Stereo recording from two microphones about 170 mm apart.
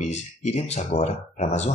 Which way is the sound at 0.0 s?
40° left (ahead or behind).